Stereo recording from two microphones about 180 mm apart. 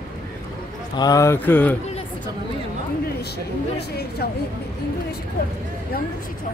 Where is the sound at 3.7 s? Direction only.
60° left (ahead or behind).